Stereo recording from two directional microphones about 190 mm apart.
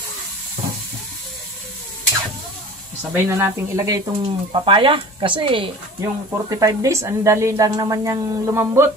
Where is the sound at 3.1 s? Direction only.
15° right (ahead or behind).